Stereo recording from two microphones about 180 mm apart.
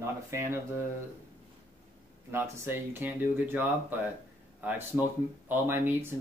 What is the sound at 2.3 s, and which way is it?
Speech, 15° right (ahead or behind).